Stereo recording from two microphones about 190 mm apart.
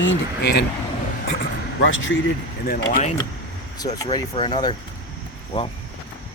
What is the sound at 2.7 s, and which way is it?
Speech, 50° left (ahead or behind).